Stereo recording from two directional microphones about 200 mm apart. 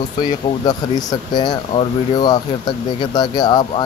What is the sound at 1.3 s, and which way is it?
Speech, 20° left (ahead or behind).